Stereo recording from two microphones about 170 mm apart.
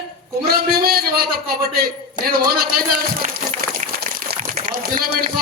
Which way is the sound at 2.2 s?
60° right (ahead or behind).